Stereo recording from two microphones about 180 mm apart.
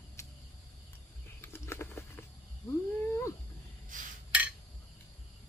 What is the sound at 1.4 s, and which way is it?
Patter, 15° left (ahead or behind).